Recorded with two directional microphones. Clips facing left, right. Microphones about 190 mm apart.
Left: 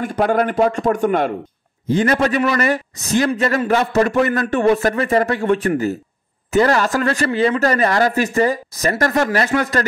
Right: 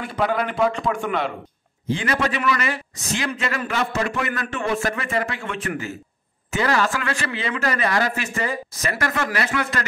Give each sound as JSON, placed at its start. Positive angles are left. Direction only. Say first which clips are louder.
{"t": 0.0, "sound": "a man's voice", "louder": "left 6 dB", "side_deg": 45}